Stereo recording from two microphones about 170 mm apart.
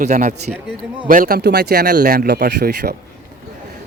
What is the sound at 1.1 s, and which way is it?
Speech, 60° right (ahead or behind).